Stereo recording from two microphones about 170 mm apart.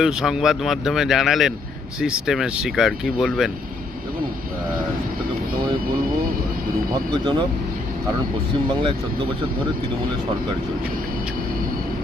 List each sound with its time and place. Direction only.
0.0 s speech: 5° right (ahead or behind)
6.9 s speech: 25° right (ahead or behind)